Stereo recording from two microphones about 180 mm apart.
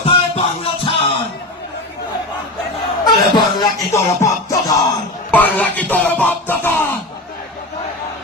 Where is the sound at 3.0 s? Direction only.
25° left (ahead or behind).